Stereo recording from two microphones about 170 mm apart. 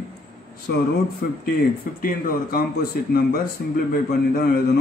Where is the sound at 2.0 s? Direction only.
60° left (ahead or behind).